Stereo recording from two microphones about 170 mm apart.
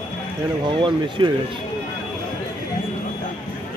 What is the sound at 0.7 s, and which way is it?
Speech, 25° right (ahead or behind).